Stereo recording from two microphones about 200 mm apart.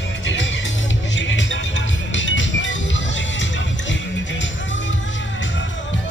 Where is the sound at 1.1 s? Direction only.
65° left (ahead or behind).